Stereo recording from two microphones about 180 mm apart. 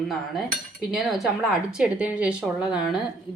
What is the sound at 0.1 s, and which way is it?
Speech, centre (ahead or behind).